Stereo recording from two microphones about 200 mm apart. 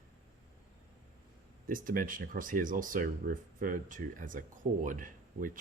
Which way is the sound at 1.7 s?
45° right (ahead or behind).